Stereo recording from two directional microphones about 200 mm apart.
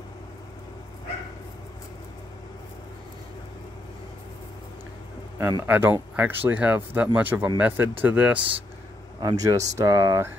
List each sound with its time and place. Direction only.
5.4 s speech: 15° right (ahead or behind)
9.2 s speech: 20° right (ahead or behind)